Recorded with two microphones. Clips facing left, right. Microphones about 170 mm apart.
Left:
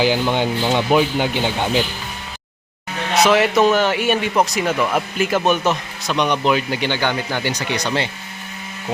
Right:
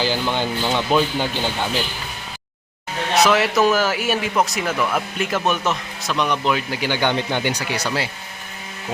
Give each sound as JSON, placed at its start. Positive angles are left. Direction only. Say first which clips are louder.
{"t": 0.0, "sound": "speech", "louder": "left 4 dB", "side_deg": 15}
{"t": 3.2, "sound": "speech", "louder": "left 4 dB", "side_deg": 0}
{"t": 7.0, "sound": "speech", "louder": "right 1 dB", "side_deg": -20}
{"t": 7.6, "sound": "speech", "louder": "left 2 dB", "side_deg": -5}